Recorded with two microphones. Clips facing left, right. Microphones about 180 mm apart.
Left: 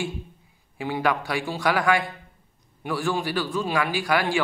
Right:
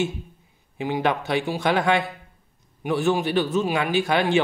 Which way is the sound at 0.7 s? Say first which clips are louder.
Right 1 dB; 20° right (ahead or behind).